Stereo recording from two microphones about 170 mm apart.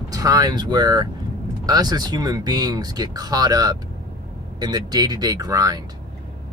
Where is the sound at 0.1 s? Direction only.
20° right (ahead or behind).